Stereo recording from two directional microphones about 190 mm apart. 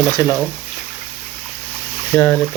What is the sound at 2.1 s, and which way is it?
Speech, 10° left (ahead or behind).